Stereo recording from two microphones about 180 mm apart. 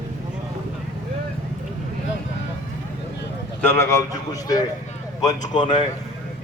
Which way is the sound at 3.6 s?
15° left (ahead or behind).